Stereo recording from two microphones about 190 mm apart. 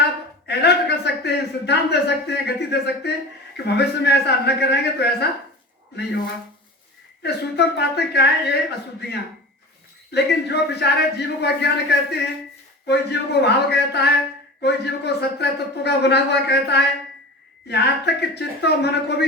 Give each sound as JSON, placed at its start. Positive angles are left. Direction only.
{"t": 0.0, "sound": "a man's voice", "side_deg": 60}
{"t": 7.2, "sound": "a man's voice", "side_deg": 60}